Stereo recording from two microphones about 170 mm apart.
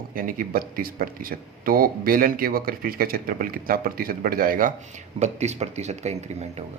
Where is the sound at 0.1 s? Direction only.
55° right (ahead or behind).